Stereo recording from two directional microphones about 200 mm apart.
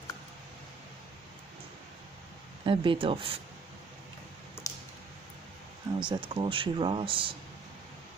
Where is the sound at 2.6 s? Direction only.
25° right (ahead or behind).